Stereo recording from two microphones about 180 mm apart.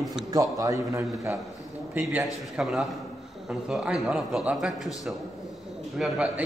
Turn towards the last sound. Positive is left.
turn(degrees=-5)  # may be behind; listen again after turning